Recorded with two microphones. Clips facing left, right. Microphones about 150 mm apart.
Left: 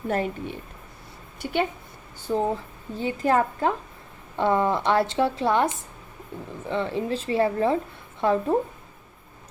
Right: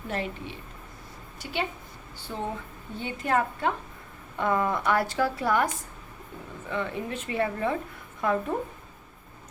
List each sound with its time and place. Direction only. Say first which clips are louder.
0.1 s a woman's voice: left 6 dB; 45° left (ahead or behind)
2.2 s a woman's voice: left 9 dB; 40° left (ahead or behind)